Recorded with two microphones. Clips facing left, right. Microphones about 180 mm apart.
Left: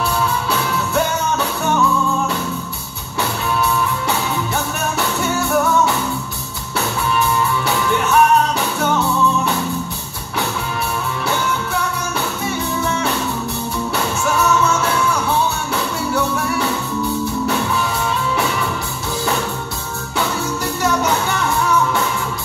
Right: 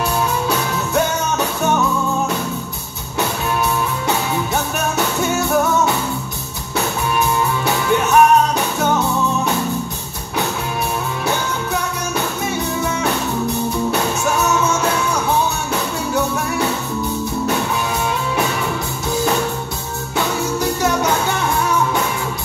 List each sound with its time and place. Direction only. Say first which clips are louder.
7.2 s music: even; 20° right (ahead or behind)
14.2 s music: left 3 dB; 20° right (ahead or behind)
20.8 s music: left 2 dB; 20° right (ahead or behind)